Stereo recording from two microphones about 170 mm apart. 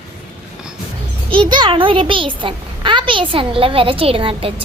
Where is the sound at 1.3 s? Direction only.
30° right (ahead or behind).